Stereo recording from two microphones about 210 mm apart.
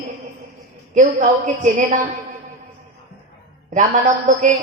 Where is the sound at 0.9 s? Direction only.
35° right (ahead or behind).